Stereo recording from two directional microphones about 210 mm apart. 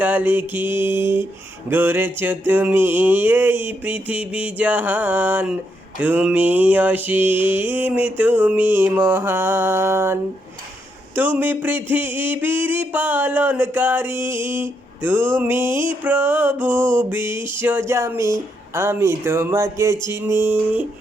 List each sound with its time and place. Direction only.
0.0 s mantra: 10° right (ahead or behind)
15.7 s music: 20° left (ahead or behind)
16.0 s mantra: 10° right (ahead or behind)